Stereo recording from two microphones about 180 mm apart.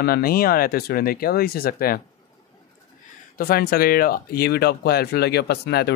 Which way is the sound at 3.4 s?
55° left (ahead or behind).